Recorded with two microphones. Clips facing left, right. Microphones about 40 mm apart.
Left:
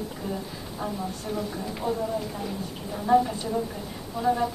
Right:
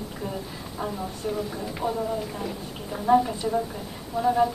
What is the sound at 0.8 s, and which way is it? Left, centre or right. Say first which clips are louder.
Speech: right 1 dB; right.